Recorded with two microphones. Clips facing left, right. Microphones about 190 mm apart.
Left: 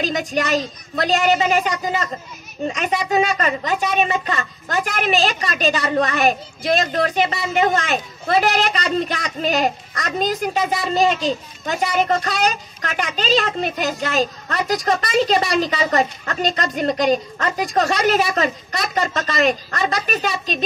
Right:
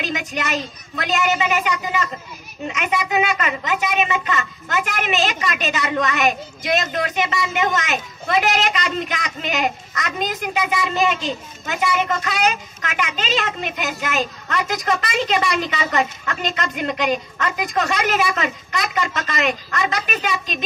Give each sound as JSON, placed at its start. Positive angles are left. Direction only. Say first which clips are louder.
{"t": 0.0, "sound": "a woman's voice", "louder": "left 4 dB", "side_deg": 40}